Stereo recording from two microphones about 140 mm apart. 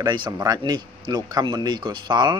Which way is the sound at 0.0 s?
30° right (ahead or behind).